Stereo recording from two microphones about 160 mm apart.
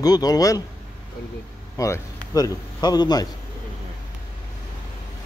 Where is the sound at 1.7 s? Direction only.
20° left (ahead or behind).